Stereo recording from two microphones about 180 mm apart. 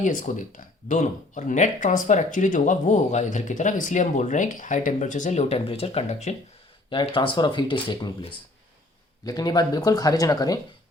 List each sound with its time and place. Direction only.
0.0 s speech: 45° left (ahead or behind)
6.9 s speech: 30° left (ahead or behind)